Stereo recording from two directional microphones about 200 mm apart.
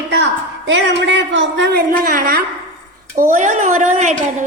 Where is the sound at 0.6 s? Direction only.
65° right (ahead or behind).